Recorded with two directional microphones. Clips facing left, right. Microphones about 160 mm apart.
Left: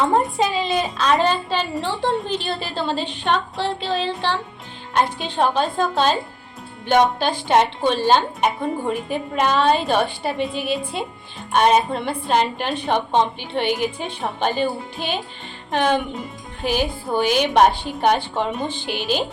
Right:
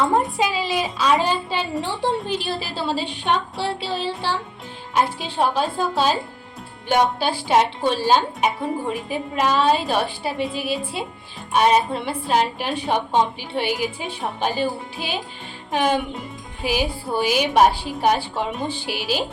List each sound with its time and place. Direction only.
0.0 s a woman's voice: centre (ahead or behind)